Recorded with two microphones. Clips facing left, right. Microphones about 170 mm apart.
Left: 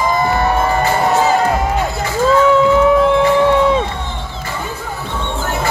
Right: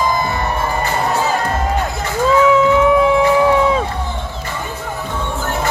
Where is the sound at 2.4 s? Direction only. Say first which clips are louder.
Left 1 dB; centre (ahead or behind).